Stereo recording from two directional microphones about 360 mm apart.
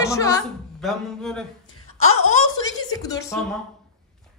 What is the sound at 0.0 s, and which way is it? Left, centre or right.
Speech, centre.